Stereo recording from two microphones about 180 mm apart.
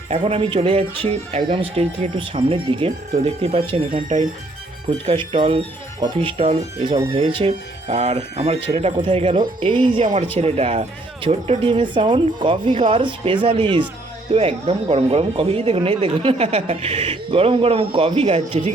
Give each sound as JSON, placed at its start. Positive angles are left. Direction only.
{"t": 0.1, "sound": "speech", "side_deg": -35}
{"t": 4.9, "sound": "speech", "side_deg": -30}
{"t": 10.0, "sound": "speech", "side_deg": -40}